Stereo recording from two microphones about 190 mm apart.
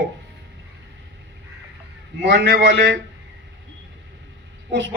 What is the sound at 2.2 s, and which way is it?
Speech, 70° right (ahead or behind).